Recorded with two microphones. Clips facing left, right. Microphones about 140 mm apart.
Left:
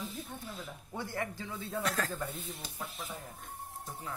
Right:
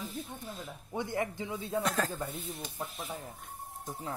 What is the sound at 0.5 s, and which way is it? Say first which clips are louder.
A man's voice: right 7 dB; 20° right (ahead or behind).